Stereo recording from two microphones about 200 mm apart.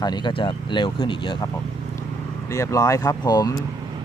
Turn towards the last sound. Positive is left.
turn(degrees=20)  # may be behind; listen again after turning